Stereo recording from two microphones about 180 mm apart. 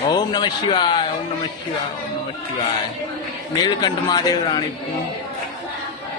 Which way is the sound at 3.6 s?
20° left (ahead or behind).